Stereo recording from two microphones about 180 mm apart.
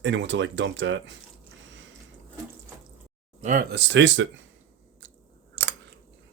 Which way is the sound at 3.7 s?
75° right (ahead or behind).